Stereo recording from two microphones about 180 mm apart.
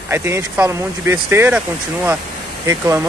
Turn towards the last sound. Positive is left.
turn(degrees=-15)  # may be behind; listen again after turning